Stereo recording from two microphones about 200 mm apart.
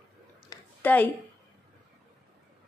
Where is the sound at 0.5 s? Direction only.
20° left (ahead or behind).